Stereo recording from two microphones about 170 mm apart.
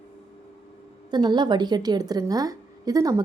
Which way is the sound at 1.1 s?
25° right (ahead or behind).